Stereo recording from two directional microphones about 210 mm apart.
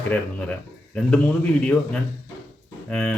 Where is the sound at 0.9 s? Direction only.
5° left (ahead or behind).